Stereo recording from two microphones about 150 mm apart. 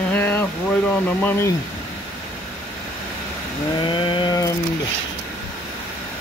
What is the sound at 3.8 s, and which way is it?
Chainsaw, 35° left (ahead or behind).